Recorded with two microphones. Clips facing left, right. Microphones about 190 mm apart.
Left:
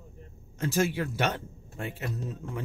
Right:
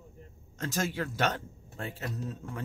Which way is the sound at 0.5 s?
10° left (ahead or behind).